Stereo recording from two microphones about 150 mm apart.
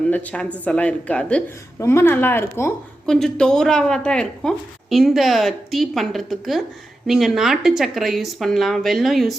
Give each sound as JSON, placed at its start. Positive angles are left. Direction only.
{"t": 0.1, "sound": "speech", "side_deg": 10}
{"t": 3.1, "sound": "speech", "side_deg": 5}